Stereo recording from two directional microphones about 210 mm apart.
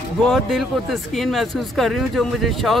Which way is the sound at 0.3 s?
Centre (ahead or behind).